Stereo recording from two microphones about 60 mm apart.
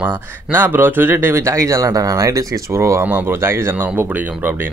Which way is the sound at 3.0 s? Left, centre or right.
Right.